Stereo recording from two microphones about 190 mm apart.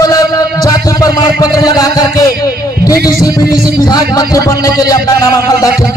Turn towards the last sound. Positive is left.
turn(degrees=15)  # may be behind; listen again after turning